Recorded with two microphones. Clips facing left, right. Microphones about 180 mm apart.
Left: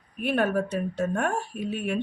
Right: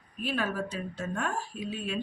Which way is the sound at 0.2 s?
60° left (ahead or behind).